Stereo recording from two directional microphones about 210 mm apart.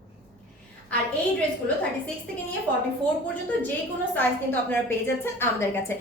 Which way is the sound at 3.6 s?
10° left (ahead or behind).